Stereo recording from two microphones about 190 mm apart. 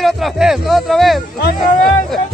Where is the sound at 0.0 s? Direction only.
Centre (ahead or behind).